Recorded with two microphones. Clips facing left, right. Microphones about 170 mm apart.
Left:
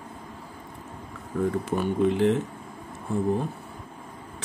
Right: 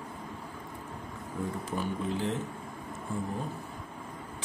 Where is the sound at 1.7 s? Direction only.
70° left (ahead or behind).